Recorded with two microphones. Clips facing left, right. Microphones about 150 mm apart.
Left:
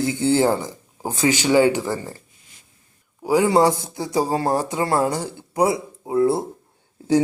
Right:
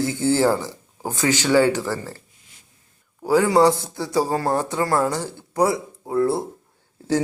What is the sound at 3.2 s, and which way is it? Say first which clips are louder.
A man's voice: even; 15° left (ahead or behind).